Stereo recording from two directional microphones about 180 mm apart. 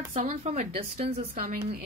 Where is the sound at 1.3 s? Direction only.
50° right (ahead or behind).